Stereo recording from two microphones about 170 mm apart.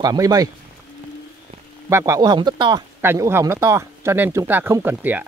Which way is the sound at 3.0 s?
15° right (ahead or behind).